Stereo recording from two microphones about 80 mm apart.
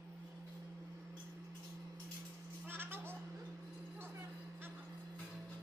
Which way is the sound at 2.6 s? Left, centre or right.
Right.